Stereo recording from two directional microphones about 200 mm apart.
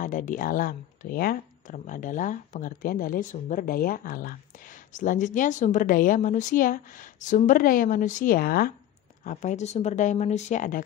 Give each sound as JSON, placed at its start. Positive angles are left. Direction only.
{"t": 0.0, "sound": "speech", "side_deg": 40}